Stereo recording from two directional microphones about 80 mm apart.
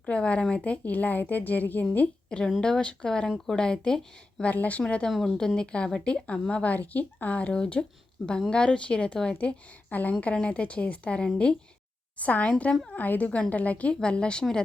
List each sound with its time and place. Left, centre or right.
0.0 s speech: centre